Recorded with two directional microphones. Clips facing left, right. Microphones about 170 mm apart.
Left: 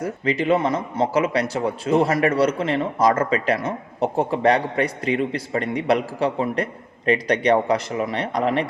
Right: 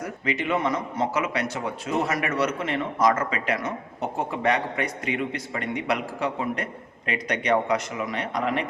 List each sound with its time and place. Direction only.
0.0 s a man's voice: 30° left (ahead or behind)